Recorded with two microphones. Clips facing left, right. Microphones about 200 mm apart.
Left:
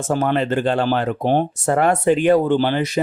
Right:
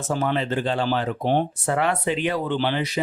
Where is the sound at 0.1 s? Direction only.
50° left (ahead or behind).